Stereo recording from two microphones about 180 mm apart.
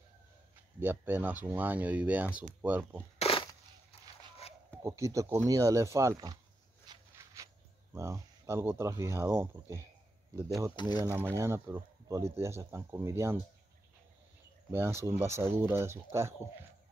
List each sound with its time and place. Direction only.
0.7 s speech: 10° right (ahead or behind)
3.2 s a sound: 30° left (ahead or behind)
4.8 s speech: 15° right (ahead or behind)
6.9 s a sound: 20° right (ahead or behind)
7.9 s speech: 15° right (ahead or behind)
11.1 s speech: 15° right (ahead or behind)
14.7 s speech: 10° right (ahead or behind)